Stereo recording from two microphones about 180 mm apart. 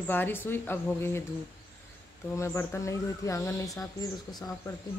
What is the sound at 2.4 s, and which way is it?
Speech, 15° left (ahead or behind).